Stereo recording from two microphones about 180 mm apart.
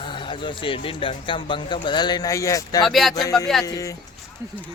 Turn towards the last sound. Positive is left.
turn(degrees=20)  # may be behind; listen again after turning